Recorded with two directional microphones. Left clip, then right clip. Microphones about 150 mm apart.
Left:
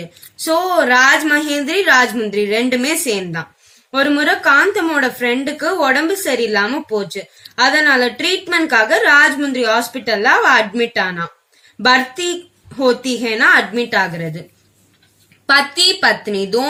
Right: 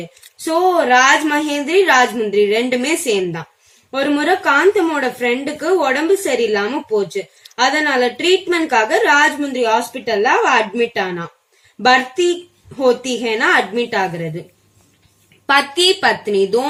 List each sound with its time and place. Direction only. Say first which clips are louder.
0.7 s a woman's voice: left 1 dB; 30° right (ahead or behind)
15.4 s a woman's voice: left 1 dB; 30° right (ahead or behind)